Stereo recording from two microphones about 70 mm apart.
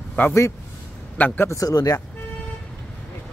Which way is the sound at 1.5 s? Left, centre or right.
Left.